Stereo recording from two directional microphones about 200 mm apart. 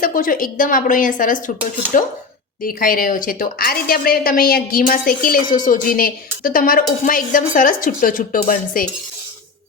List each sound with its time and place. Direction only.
0.0 s a woman's voice: 45° left (ahead or behind)